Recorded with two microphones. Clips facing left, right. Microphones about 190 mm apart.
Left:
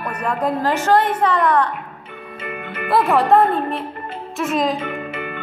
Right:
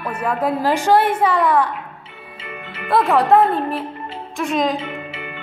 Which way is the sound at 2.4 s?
55° left (ahead or behind).